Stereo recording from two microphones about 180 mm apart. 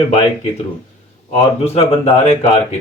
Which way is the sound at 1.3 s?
35° left (ahead or behind).